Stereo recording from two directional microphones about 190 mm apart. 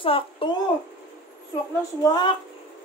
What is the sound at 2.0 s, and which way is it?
Speech, 25° left (ahead or behind).